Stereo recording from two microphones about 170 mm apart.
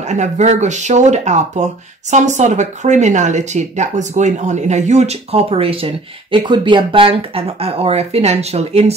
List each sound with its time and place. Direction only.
0.1 s speech: 45° right (ahead or behind)